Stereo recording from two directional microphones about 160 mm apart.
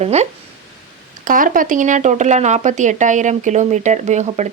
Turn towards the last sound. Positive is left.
turn(degrees=-45)  # may be behind; listen again after turning